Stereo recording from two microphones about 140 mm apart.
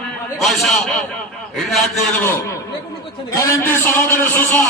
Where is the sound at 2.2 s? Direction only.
20° left (ahead or behind).